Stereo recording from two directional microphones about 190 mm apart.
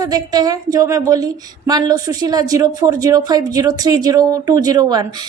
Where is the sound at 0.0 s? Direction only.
20° right (ahead or behind).